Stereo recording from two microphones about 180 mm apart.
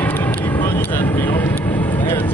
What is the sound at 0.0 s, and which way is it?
Vehicle, 10° left (ahead or behind).